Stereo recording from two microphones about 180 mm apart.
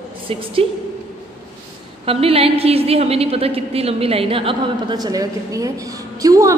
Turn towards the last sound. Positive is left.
turn(degrees=-20)  # may be behind; listen again after turning